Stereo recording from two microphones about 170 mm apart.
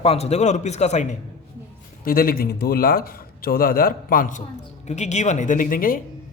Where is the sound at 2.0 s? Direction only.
60° left (ahead or behind).